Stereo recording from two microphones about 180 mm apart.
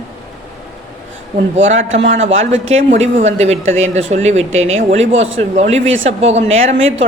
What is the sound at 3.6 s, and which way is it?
Speech, 90° right.